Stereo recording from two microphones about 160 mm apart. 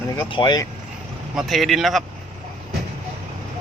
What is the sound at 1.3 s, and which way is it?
Speech, centre (ahead or behind).